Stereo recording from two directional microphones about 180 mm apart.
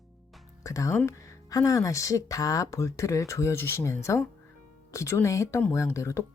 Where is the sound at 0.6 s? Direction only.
20° left (ahead or behind).